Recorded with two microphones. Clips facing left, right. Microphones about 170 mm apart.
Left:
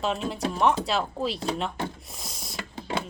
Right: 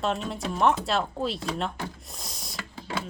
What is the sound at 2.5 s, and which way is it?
Mechanisms, 20° left (ahead or behind).